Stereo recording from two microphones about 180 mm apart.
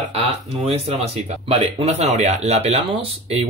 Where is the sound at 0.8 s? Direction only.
35° right (ahead or behind).